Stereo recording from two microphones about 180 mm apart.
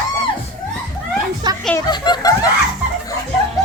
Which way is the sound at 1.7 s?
20° left (ahead or behind).